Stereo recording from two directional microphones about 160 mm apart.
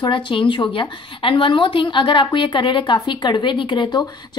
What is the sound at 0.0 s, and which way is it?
A woman's voice, 30° left (ahead or behind).